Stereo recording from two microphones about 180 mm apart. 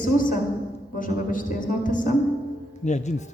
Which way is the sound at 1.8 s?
45° left (ahead or behind).